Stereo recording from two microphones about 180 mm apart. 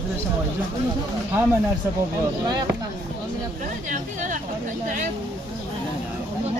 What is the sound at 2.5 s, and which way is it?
Speech, 20° right (ahead or behind).